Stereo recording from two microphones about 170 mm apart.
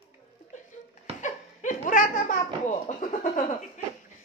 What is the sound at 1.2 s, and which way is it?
Laughter, 50° left (ahead or behind).